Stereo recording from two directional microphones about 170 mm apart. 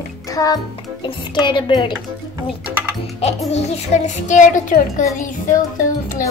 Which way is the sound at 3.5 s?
40° left (ahead or behind).